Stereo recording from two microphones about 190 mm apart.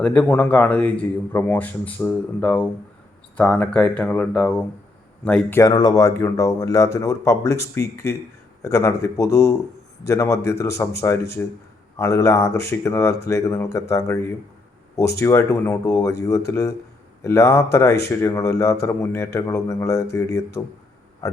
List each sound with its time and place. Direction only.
0.0 s speech: 10° left (ahead or behind)
5.5 s speech: 20° left (ahead or behind)